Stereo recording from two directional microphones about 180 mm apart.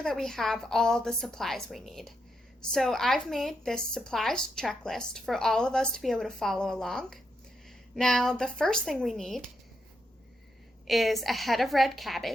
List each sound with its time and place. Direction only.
0.0 s speech: centre (ahead or behind)
10.8 s speech: centre (ahead or behind)